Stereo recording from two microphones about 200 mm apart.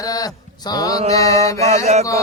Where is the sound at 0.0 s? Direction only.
20° left (ahead or behind).